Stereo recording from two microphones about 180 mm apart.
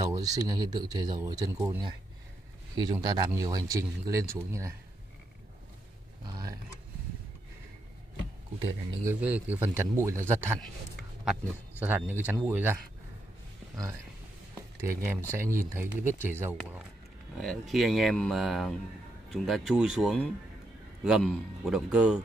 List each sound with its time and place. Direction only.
0.0 s speech: 20° right (ahead or behind)
6.2 s speech: 20° right (ahead or behind)
9.0 s speech: 10° right (ahead or behind)
11.8 s speech: 10° right (ahead or behind)
14.8 s speech: 15° right (ahead or behind)
17.4 s speech: centre (ahead or behind)